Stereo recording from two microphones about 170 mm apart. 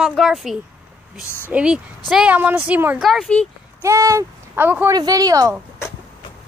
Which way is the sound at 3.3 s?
10° left (ahead or behind).